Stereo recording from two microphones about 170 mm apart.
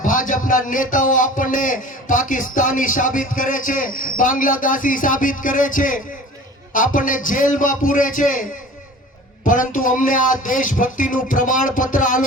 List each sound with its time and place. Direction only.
0.0 s a man's voice: 50° left (ahead or behind)